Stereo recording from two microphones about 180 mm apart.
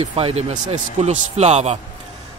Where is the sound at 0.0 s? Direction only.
35° right (ahead or behind).